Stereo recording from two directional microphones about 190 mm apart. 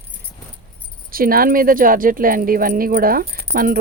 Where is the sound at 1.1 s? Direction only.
50° right (ahead or behind).